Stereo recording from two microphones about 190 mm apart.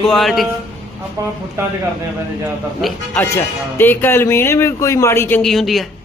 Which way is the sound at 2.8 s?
10° left (ahead or behind).